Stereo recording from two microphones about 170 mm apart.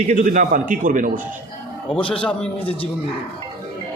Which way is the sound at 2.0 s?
30° left (ahead or behind).